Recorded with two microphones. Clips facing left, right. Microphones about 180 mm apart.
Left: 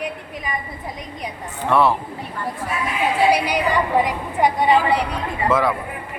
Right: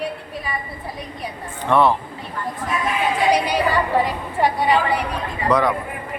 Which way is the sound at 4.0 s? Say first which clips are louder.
Left 1 dB; 15° left (ahead or behind).